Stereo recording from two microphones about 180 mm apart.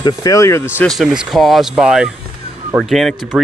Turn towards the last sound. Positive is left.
turn(degrees=0)  # may be behind; listen again after turning